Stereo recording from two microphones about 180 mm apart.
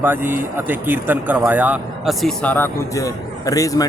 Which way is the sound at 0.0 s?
10° right (ahead or behind).